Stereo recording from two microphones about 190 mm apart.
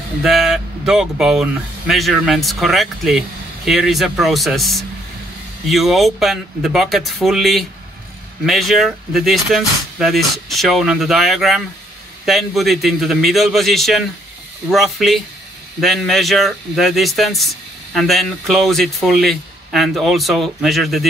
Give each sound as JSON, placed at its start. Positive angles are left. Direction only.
{"t": 0.2, "sound": "speech", "side_deg": 0}